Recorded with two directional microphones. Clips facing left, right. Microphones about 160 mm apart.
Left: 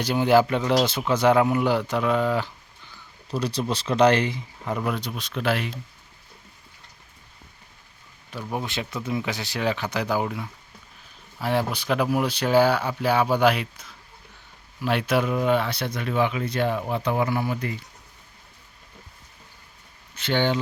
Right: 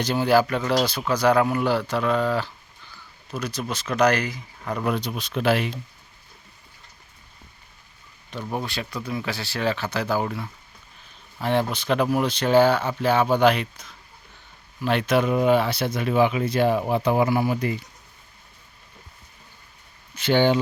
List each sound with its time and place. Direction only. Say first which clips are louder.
0.0 s speech: left 1 dB; 15° left (ahead or behind)
3.2 s speech: left 3 dB; 30° left (ahead or behind)
4.8 s speech: right 5 dB; centre (ahead or behind)
8.3 s speech: right 1 dB; 5° left (ahead or behind)
8.6 s speech: left 1 dB; 20° left (ahead or behind)
15.3 s speech: right 3 dB; 5° right (ahead or behind)
20.1 s speech: right 4 dB; 10° right (ahead or behind)